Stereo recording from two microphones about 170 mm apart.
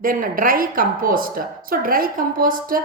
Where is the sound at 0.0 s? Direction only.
55° right (ahead or behind).